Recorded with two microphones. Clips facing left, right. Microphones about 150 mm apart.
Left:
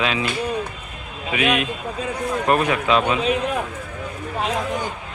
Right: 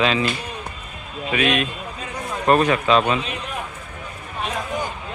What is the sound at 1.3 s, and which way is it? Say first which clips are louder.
Speech: even; 15° left (ahead or behind).